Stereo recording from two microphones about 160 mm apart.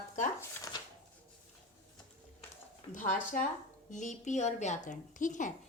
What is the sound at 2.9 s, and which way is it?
Speech, 55° left (ahead or behind).